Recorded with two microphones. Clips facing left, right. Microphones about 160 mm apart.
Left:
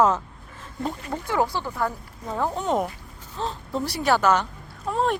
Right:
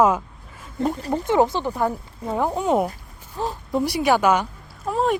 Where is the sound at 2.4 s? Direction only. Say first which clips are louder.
Right 4 dB; 10° right (ahead or behind).